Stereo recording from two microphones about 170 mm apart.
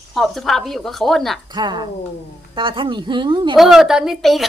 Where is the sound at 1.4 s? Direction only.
25° right (ahead or behind).